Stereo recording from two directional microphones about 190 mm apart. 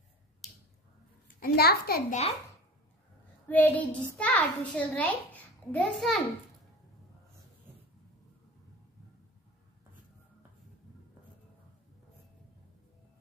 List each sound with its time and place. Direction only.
1.4 s a child's voice: 55° left (ahead or behind)
3.4 s a child's voice: 10° left (ahead or behind)